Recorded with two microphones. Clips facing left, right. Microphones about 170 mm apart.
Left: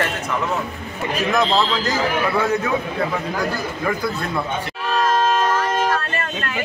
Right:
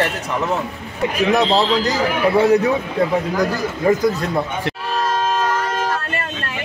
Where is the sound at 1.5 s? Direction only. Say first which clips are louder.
Right 3 dB; 35° right (ahead or behind).